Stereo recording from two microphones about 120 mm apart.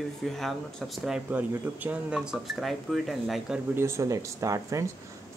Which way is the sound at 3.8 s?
25° right (ahead or behind).